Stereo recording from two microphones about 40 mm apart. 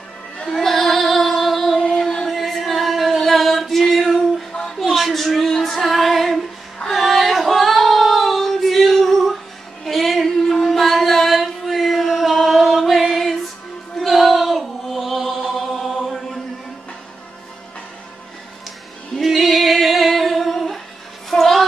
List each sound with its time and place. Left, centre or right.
0.5 s female singing: centre
1.9 s music: centre
2.2 s singing: centre
4.7 s a sound: centre
5.5 s music: centre
6.9 s female singing: centre
9.8 s a sound: centre
19.1 s singing: centre
21.3 s music: centre